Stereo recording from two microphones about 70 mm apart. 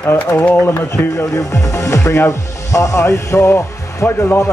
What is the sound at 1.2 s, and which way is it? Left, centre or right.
Speech, left.